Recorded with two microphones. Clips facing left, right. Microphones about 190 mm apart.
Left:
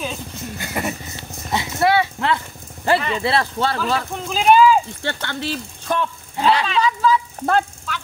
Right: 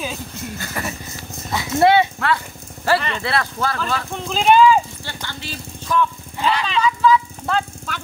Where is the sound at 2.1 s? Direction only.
20° left (ahead or behind).